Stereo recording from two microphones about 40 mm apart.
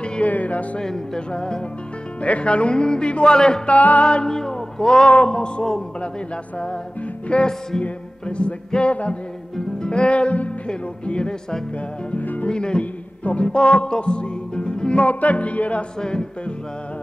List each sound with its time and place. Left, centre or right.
0.2 s music: left
0.7 s music: centre
1.3 s a man's voice: left
3.6 s music: left
4.3 s a man's voice: centre
5.0 s a man's voice: left
7.2 s a man's voice: centre
7.8 s music: left
9.8 s a man's voice: left
12.1 s music: left
12.4 s a man's voice: left
13.2 s music: left
15.0 s music: left
16.0 s a man's voice: left